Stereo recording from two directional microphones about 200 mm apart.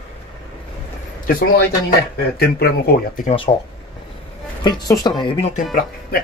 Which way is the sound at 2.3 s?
50° left (ahead or behind).